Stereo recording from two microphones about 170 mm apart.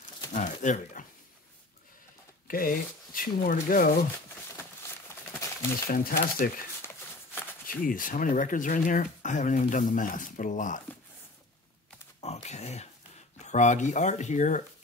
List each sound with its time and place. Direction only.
0.3 s a sound: 45° left (ahead or behind)
2.4 s speech: 55° left (ahead or behind)
5.9 s speech: 60° left (ahead or behind)
7.6 s speech: 55° left (ahead or behind)
12.2 s a sound: 40° left (ahead or behind)
13.4 s speech: 45° left (ahead or behind)